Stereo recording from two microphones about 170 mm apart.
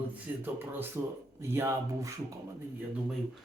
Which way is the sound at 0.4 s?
10° right (ahead or behind).